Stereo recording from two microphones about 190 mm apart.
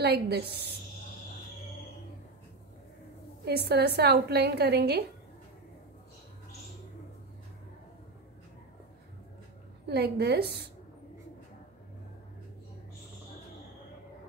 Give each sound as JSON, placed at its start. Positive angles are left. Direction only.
{"t": 0.0, "sound": "a woman's voice", "side_deg": -60}
{"t": 3.4, "sound": "a woman's voice", "side_deg": -60}
{"t": 9.8, "sound": "a woman's voice", "side_deg": -60}